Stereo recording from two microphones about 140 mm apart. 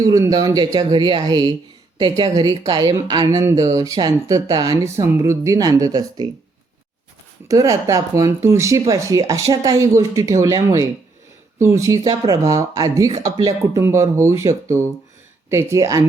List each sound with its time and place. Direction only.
0.0 s a woman's voice: 25° right (ahead or behind)
7.4 s a woman's voice: 25° right (ahead or behind)